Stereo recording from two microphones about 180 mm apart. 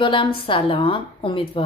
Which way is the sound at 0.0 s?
30° left (ahead or behind).